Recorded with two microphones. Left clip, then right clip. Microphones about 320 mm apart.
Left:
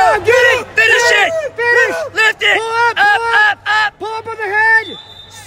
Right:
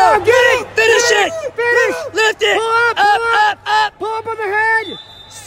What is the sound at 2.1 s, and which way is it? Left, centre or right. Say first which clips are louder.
Speech: left 2 dB; centre.